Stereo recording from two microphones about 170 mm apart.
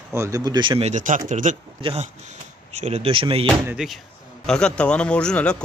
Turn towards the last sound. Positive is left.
turn(degrees=5)  # may be behind; listen again after turning